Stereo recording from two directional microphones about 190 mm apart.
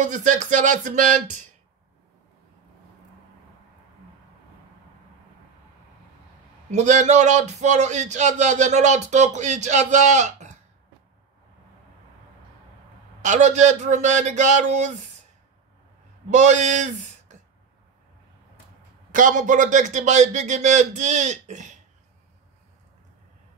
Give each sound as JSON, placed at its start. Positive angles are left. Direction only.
{"t": 0.0, "sound": "a man's voice", "side_deg": -40}
{"t": 6.7, "sound": "a man's voice", "side_deg": -35}
{"t": 13.2, "sound": "a man's voice", "side_deg": -40}
{"t": 16.3, "sound": "speech", "side_deg": -40}
{"t": 19.1, "sound": "a man's voice", "side_deg": -45}